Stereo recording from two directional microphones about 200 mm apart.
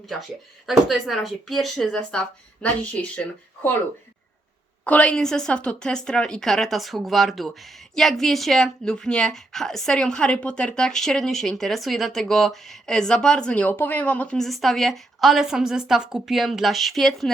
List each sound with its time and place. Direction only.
0.7 s a woman's voice: centre (ahead or behind)
4.9 s a woman's voice: 5° left (ahead or behind)